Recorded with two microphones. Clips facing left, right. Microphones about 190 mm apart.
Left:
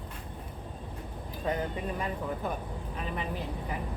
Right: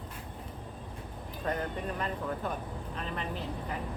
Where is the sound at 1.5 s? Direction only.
10° left (ahead or behind).